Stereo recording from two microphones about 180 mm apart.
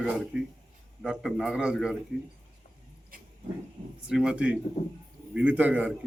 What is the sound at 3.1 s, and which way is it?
Pig, 50° right (ahead or behind).